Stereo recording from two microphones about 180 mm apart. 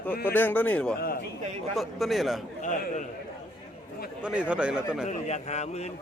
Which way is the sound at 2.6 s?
45° left (ahead or behind).